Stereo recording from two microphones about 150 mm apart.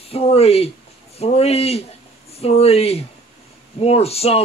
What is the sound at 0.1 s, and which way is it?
Speech, 40° left (ahead or behind).